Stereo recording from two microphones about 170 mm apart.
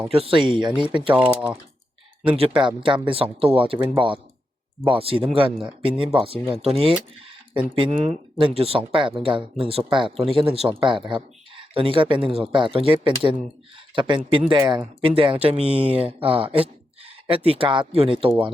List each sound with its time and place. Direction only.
0.1 s speech: 35° right (ahead or behind)
1.1 s speech: 5° right (ahead or behind)
2.2 s speech: 30° right (ahead or behind)